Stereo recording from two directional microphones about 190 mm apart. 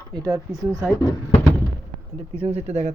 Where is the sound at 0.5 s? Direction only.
5° left (ahead or behind).